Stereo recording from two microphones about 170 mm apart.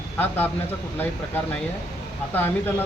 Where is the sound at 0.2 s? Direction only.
10° left (ahead or behind).